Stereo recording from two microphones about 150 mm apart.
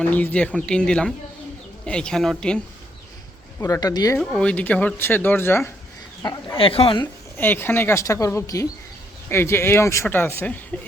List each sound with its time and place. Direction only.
0.0 s speech: 10° left (ahead or behind)
3.6 s speech: 25° left (ahead or behind)
4.2 s speech: 5° left (ahead or behind)
6.6 s speech: 40° left (ahead or behind)
7.3 s speech: 15° left (ahead or behind)